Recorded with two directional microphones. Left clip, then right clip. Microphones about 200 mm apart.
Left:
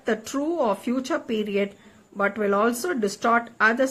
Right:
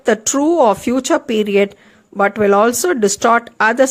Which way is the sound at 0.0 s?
45° right (ahead or behind).